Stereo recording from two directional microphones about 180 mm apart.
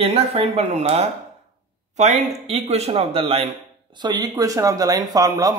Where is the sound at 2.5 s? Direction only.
35° right (ahead or behind).